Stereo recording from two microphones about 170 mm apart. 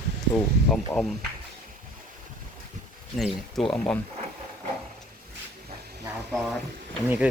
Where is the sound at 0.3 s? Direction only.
Centre (ahead or behind).